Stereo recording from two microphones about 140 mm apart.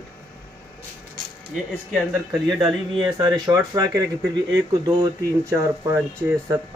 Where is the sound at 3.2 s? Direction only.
30° right (ahead or behind).